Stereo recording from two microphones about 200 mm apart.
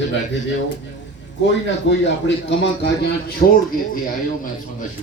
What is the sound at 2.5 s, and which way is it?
Speech, 55° left (ahead or behind).